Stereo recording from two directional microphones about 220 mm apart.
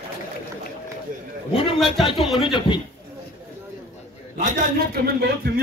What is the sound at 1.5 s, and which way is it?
Speech, 25° left (ahead or behind).